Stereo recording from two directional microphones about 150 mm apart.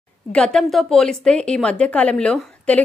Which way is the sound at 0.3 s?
5° left (ahead or behind).